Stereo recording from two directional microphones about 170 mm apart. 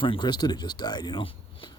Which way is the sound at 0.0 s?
25° left (ahead or behind).